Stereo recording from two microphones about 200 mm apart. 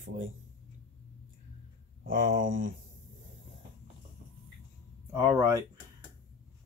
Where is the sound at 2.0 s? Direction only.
45° right (ahead or behind).